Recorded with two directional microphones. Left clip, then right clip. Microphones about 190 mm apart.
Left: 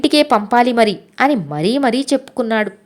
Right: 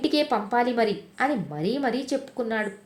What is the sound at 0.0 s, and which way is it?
A woman's voice, 40° left (ahead or behind).